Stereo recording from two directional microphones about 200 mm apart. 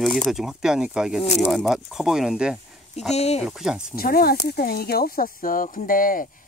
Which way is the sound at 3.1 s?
30° left (ahead or behind).